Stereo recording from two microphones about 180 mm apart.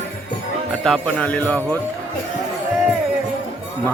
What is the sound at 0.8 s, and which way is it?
Speech, 5° left (ahead or behind).